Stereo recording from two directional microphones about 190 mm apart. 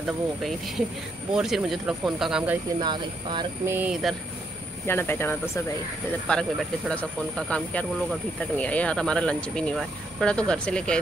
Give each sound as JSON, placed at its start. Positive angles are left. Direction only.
{"t": 0.0, "sound": "speech", "side_deg": 0}
{"t": 2.8, "sound": "speech", "side_deg": -25}
{"t": 3.7, "sound": "speech", "side_deg": -5}
{"t": 4.8, "sound": "speech", "side_deg": 10}
{"t": 6.9, "sound": "speech", "side_deg": 5}